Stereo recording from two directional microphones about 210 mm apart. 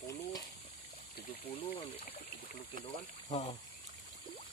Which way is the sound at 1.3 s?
25° left (ahead or behind).